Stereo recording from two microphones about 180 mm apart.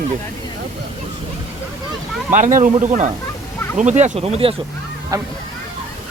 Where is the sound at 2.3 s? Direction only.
45° right (ahead or behind).